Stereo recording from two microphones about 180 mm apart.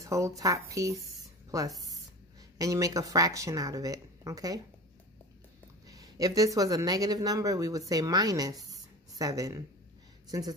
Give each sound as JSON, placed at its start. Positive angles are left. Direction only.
{"t": 0.0, "sound": "speech", "side_deg": -15}
{"t": 2.6, "sound": "speech", "side_deg": -20}
{"t": 5.9, "sound": "speech", "side_deg": -20}